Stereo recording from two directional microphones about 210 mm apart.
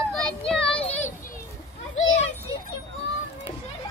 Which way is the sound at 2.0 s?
65° left (ahead or behind).